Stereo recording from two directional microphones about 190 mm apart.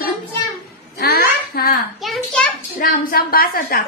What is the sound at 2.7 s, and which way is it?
Speech, 50° left (ahead or behind).